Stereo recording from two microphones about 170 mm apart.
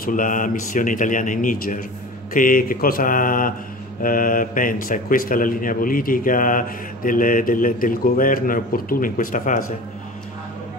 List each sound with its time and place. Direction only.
0.0 s speech: 50° left (ahead or behind)